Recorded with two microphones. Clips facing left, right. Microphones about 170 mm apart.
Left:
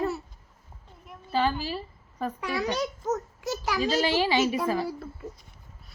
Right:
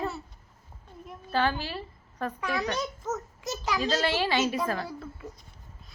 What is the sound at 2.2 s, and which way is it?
A child's voice, 10° left (ahead or behind).